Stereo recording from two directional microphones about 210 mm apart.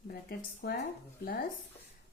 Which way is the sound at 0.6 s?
50° left (ahead or behind).